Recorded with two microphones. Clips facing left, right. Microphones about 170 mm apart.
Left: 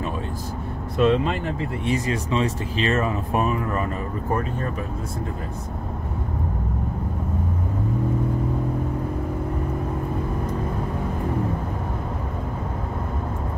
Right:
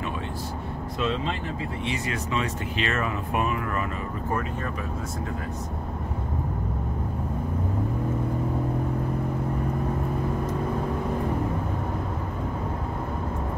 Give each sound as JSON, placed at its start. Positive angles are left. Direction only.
{"t": 0.9, "sound": "speech", "side_deg": 55}
{"t": 1.9, "sound": "speech", "side_deg": 35}